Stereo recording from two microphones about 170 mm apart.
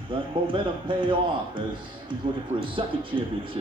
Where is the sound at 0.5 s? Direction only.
30° right (ahead or behind).